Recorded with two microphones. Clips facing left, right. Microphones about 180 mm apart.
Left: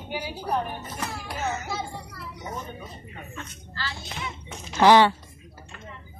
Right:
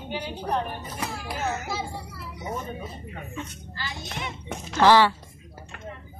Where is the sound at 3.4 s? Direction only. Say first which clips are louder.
Even; 15° right (ahead or behind).